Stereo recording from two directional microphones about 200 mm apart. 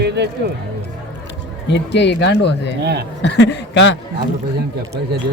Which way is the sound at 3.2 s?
60° left (ahead or behind).